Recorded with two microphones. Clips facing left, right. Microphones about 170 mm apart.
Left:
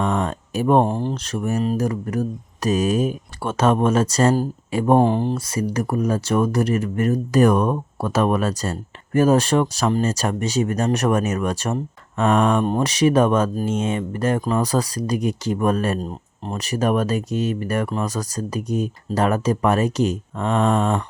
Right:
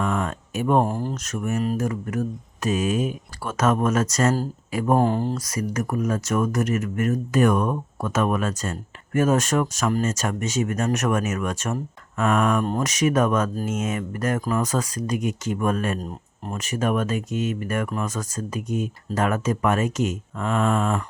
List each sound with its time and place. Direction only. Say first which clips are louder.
0.0 s speech: left 3 dB; 30° left (ahead or behind)